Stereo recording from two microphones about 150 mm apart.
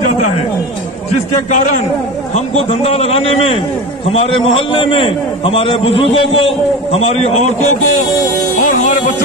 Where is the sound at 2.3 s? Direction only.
45° left (ahead or behind).